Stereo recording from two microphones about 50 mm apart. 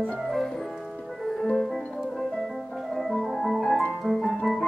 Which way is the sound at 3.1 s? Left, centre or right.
Centre.